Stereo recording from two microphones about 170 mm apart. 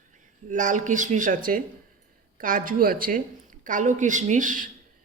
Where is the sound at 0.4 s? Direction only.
50° right (ahead or behind).